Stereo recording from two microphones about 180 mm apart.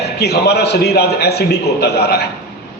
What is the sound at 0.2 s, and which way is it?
A man's voice, 65° left (ahead or behind).